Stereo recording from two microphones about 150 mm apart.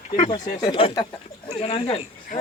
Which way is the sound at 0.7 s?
35° left (ahead or behind).